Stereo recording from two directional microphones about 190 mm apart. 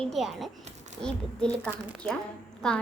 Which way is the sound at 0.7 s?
40° right (ahead or behind).